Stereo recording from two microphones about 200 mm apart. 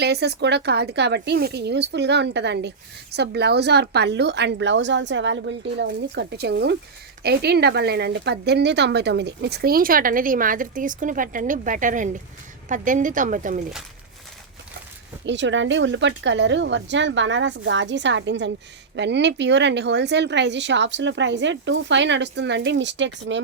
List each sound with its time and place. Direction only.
0.0 s a woman's voice: 55° right (ahead or behind); by 13.6 s 40° right (ahead or behind)
15.3 s speech: 65° right (ahead or behind)